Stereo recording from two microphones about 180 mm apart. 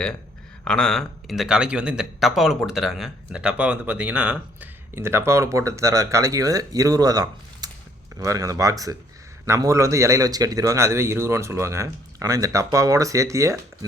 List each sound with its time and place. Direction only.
0.6 s speech: 5° left (ahead or behind); by 13.6 s 15° right (ahead or behind)